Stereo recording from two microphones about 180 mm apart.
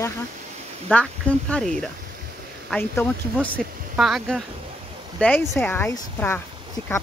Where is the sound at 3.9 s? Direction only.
Centre (ahead or behind).